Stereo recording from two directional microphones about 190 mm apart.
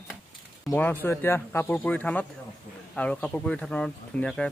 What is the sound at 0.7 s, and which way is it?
Speech, 10° left (ahead or behind).